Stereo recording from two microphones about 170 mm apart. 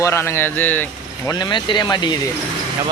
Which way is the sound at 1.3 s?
25° left (ahead or behind).